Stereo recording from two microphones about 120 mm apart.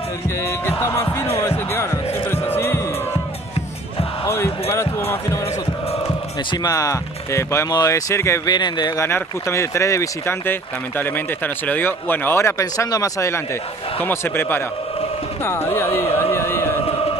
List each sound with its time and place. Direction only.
0.7 s basketball bounce: 20° left (ahead or behind)
2.3 s music: 20° left (ahead or behind)
4.3 s basketball bounce: 20° left (ahead or behind)
6.5 s speech: 30° left (ahead or behind)
8.5 s speech: 35° left (ahead or behind)
9.0 s speech: 20° left (ahead or behind)